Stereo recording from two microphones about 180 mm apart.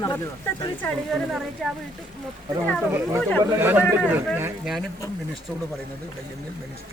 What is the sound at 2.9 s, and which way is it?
A man's voice, 15° right (ahead or behind).